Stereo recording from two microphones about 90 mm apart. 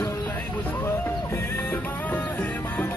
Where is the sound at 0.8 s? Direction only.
25° left (ahead or behind).